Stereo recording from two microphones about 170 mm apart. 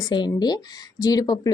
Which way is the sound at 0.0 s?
25° left (ahead or behind).